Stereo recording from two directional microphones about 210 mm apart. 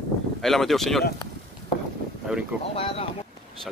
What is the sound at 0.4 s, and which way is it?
Speech, centre (ahead or behind).